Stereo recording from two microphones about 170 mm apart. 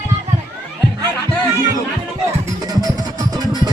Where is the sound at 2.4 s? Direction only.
25° right (ahead or behind).